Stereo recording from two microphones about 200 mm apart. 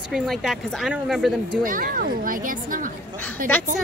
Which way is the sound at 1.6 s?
45° right (ahead or behind).